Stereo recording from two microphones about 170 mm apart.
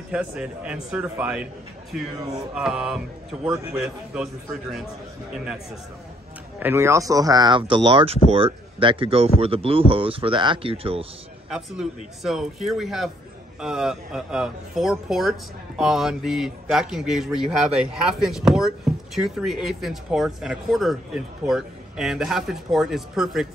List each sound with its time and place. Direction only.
0.1 s a man's voice: 5° right (ahead or behind)
6.6 s speech: 15° right (ahead or behind); by 11.1 s 35° right (ahead or behind)
11.5 s speech: 5° right (ahead or behind)